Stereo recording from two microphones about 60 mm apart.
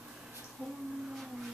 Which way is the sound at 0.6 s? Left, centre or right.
Right.